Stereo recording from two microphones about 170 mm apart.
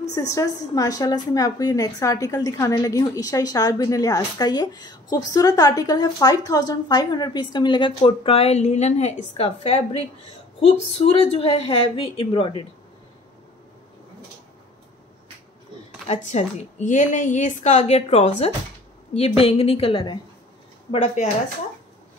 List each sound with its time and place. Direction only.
0.1 s a woman's voice: 20° left (ahead or behind)
16.1 s a woman's voice: 45° left (ahead or behind)
20.9 s a woman's voice: 45° left (ahead or behind)